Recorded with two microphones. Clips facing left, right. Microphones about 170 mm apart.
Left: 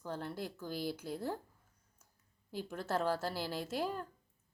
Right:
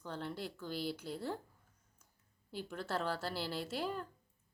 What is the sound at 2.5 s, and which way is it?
A woman's voice, 45° left (ahead or behind).